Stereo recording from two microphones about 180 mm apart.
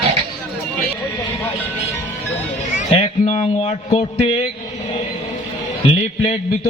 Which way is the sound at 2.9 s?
35° left (ahead or behind).